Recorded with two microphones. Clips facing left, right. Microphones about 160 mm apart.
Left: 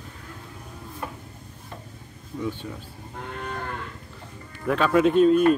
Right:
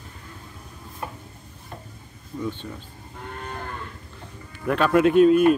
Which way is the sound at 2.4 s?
10° left (ahead or behind).